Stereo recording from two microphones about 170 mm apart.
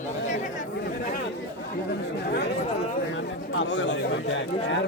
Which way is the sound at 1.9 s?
75° left (ahead or behind).